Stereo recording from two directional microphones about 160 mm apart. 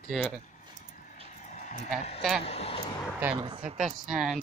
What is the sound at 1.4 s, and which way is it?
Vehicle, 50° left (ahead or behind).